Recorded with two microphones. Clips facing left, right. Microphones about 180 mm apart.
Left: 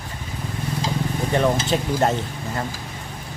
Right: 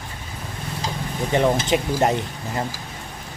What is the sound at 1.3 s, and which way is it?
Speech, 15° right (ahead or behind).